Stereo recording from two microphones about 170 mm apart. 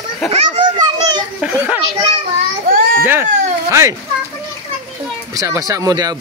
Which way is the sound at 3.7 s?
15° right (ahead or behind).